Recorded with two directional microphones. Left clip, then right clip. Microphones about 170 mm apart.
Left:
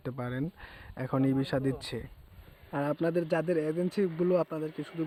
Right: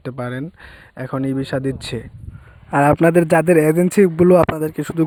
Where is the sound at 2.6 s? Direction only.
55° right (ahead or behind).